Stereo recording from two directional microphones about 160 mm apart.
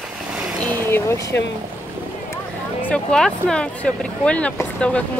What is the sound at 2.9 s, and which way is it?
Speech, 5° left (ahead or behind).